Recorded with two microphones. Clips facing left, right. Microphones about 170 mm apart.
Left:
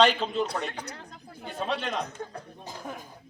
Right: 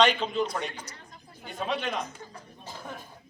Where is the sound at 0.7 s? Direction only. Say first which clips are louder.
Left 5 dB; 65° left (ahead or behind).